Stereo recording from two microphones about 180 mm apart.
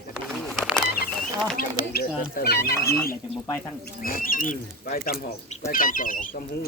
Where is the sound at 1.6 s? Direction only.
55° left (ahead or behind).